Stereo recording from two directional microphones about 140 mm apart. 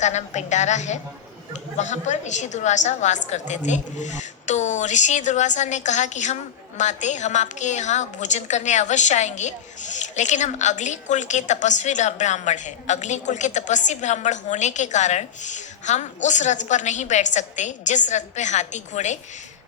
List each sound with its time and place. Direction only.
0.0 s a woman's voice: 55° left (ahead or behind)